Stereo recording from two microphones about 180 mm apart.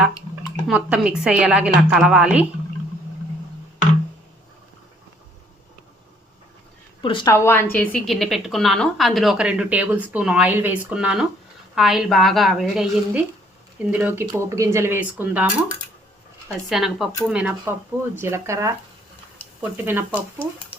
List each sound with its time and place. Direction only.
0.7 s a woman's voice: 5° right (ahead or behind)
7.0 s a woman's voice: 25° left (ahead or behind)
7.3 s a woman's voice: 15° left (ahead or behind); by 15.6 s 10° right (ahead or behind)
16.6 s a woman's voice: centre (ahead or behind)
19.7 s speech: 10° right (ahead or behind)